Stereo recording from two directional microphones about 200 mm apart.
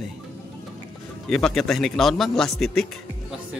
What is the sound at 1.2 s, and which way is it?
A man's voice, centre (ahead or behind).